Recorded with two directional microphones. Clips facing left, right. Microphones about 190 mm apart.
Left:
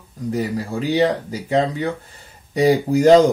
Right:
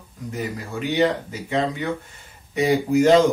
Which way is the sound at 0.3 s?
35° left (ahead or behind).